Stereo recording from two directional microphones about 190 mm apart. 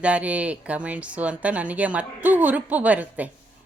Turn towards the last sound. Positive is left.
turn(degrees=-10)  # may be behind; listen again after turning